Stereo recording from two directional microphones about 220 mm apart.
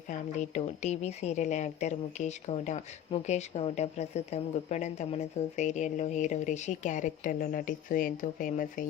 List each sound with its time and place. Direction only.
0.1 s a woman's voice: 30° left (ahead or behind)